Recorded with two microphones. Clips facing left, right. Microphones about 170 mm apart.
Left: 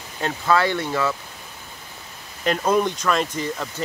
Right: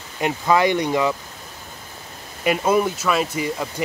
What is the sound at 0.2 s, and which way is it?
Speech, 15° right (ahead or behind).